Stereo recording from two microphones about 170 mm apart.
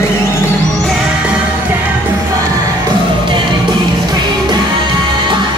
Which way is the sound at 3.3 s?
25° right (ahead or behind).